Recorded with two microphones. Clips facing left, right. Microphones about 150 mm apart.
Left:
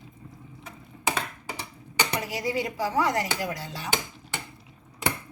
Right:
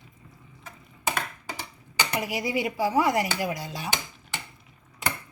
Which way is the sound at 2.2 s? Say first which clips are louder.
Right 1 dB; 15° right (ahead or behind).